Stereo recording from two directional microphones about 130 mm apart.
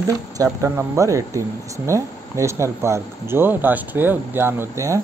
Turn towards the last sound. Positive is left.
turn(degrees=-20)  # may be behind; listen again after turning